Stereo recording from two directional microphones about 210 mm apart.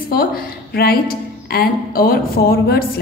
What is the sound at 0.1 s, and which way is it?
A woman's voice, 45° left (ahead or behind).